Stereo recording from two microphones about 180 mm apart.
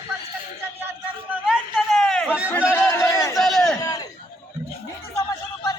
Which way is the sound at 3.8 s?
20° left (ahead or behind).